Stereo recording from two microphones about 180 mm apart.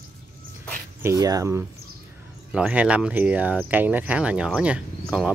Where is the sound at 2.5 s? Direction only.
5° right (ahead or behind).